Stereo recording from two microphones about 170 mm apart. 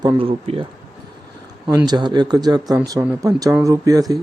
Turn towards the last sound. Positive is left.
turn(degrees=-20)  # may be behind; listen again after turning